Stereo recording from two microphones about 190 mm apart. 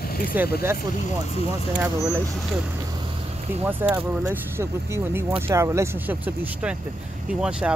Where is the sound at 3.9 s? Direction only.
10° right (ahead or behind).